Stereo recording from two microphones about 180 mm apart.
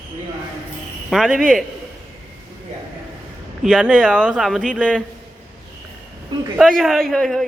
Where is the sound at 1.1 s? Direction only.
Centre (ahead or behind).